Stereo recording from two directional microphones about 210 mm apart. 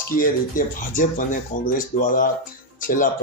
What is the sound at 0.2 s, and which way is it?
Speech, 40° left (ahead or behind).